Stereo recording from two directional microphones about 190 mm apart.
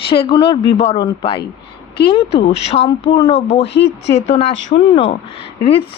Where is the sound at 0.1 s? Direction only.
25° left (ahead or behind).